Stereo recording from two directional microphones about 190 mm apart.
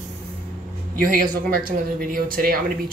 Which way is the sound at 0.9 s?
50° right (ahead or behind).